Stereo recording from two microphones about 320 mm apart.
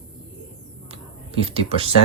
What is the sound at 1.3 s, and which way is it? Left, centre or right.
Speech, centre.